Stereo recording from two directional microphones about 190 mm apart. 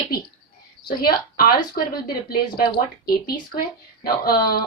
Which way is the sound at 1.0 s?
50° left (ahead or behind).